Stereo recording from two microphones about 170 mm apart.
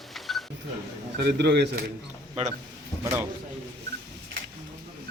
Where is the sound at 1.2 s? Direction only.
75° right (ahead or behind).